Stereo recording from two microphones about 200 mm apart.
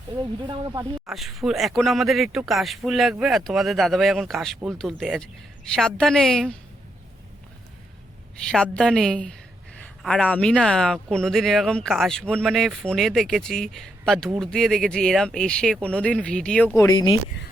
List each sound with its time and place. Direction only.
0.4 s speech: 20° right (ahead or behind)
1.0 s speech: centre (ahead or behind)
8.4 s speech: 5° left (ahead or behind)
16.7 s speech: 20° left (ahead or behind)